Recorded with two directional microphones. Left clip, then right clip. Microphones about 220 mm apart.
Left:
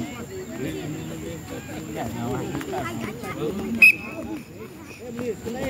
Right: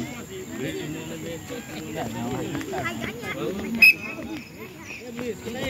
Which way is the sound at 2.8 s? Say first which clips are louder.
Right 1 dB; 55° left (ahead or behind).